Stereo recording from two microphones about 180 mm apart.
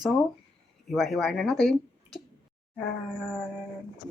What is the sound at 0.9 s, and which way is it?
Speech, centre (ahead or behind).